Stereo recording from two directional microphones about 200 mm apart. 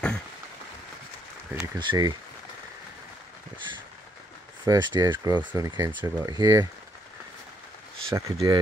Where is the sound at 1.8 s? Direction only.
20° right (ahead or behind).